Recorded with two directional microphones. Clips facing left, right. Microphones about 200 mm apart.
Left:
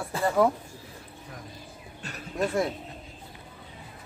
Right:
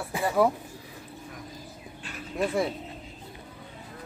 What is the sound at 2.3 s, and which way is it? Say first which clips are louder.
Speech: even; 5° right (ahead or behind).